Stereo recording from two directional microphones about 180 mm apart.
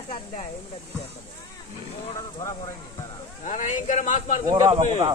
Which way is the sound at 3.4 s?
45° left (ahead or behind).